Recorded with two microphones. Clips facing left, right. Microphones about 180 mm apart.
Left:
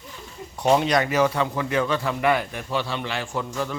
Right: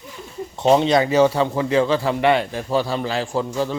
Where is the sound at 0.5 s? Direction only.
25° right (ahead or behind).